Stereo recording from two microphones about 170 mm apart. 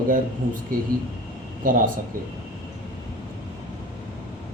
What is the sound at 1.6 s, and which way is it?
Speech, 55° right (ahead or behind).